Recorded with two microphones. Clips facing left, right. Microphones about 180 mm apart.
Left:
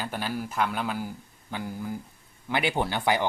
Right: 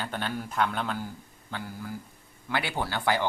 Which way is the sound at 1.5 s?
20° left (ahead or behind).